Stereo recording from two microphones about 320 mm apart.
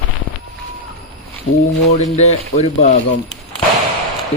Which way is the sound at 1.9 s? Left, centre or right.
Left.